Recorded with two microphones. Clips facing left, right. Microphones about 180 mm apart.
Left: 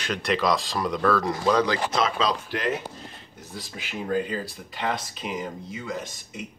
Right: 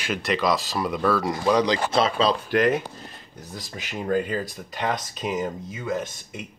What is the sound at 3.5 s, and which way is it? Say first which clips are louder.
Speech: right 1 dB; 45° right (ahead or behind).